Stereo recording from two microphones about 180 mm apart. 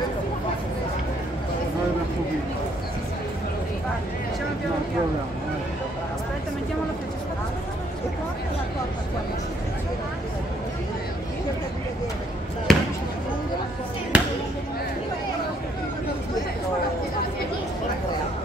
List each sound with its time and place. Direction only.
12.7 s basketball bounce: centre (ahead or behind)
14.1 s basketball bounce: 5° right (ahead or behind)